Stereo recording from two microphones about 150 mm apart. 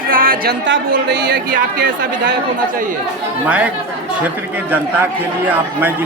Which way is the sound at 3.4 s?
10° right (ahead or behind).